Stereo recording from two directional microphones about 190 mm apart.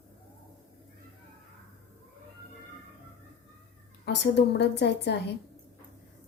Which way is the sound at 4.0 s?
65° left (ahead or behind).